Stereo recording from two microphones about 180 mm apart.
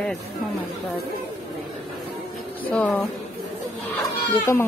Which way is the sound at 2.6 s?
5° left (ahead or behind).